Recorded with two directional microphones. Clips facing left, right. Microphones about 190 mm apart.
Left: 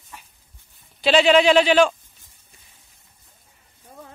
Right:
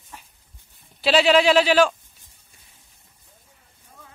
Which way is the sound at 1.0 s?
5° right (ahead or behind).